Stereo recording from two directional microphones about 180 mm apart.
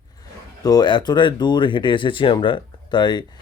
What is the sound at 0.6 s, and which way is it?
Speech, 20° left (ahead or behind).